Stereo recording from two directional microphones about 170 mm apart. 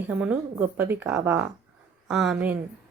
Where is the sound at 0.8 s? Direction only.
15° right (ahead or behind).